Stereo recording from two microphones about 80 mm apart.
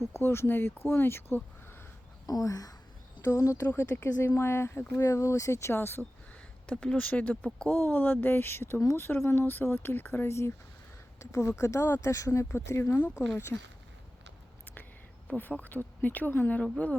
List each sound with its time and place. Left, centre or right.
0.0 s speech: left
2.2 s speech: left
3.7 s speech: left
6.7 s speech: centre; by 8.8 s left
8.8 s speech: left
9.0 s speech: left
15.3 s speech: centre